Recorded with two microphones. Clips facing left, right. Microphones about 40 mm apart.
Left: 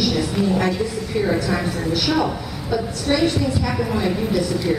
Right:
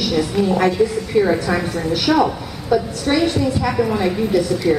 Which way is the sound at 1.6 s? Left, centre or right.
Centre.